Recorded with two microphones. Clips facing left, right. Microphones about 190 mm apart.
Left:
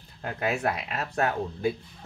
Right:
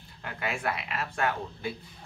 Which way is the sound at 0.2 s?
40° left (ahead or behind).